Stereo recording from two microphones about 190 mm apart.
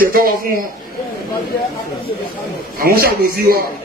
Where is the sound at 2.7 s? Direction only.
50° right (ahead or behind).